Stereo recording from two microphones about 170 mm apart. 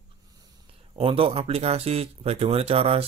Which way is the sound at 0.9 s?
30° right (ahead or behind).